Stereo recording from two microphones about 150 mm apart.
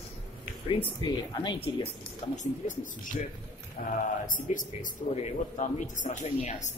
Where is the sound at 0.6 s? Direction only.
30° left (ahead or behind).